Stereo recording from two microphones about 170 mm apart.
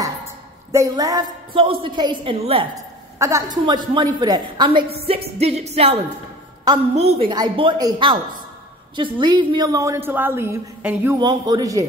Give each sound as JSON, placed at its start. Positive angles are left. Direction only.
{"t": 0.7, "sound": "a woman's voice", "side_deg": -20}
{"t": 3.2, "sound": "a woman's voice", "side_deg": -15}
{"t": 5.0, "sound": "music", "side_deg": -35}
{"t": 7.0, "sound": "music", "side_deg": -35}
{"t": 7.3, "sound": "a woman's voice", "side_deg": -30}
{"t": 11.1, "sound": "a woman's voice", "side_deg": -25}